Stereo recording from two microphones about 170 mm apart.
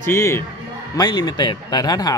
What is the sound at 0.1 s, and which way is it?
Speech, 15° left (ahead or behind).